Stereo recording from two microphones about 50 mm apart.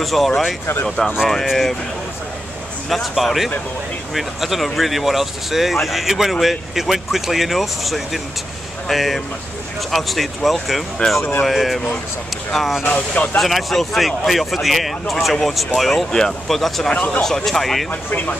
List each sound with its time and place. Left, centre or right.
0.0 s speech: centre
2.9 s speech: centre
11.0 s speech: centre
11.4 s speech: centre
12.8 s speech: left
13.4 s speech: centre
16.9 s speech: left
17.5 s speech: centre